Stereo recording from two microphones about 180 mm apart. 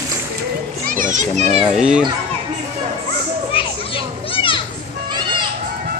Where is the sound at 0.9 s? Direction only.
45° right (ahead or behind).